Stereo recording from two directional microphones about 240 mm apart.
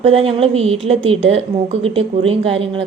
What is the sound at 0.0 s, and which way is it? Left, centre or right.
A woman's voice, right.